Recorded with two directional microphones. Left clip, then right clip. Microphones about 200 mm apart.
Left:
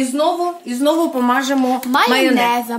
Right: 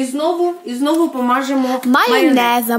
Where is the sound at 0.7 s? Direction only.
45° left (ahead or behind).